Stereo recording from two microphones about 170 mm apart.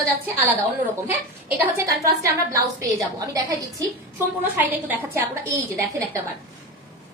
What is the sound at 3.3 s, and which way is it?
Speech, 20° right (ahead or behind).